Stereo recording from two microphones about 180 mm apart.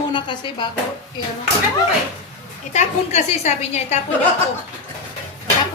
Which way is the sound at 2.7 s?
40° left (ahead or behind).